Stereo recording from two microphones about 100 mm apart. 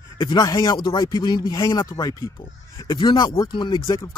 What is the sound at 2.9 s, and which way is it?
Speech, 50° left (ahead or behind).